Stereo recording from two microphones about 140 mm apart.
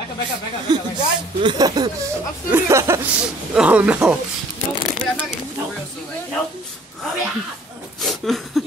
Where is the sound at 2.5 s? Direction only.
20° right (ahead or behind).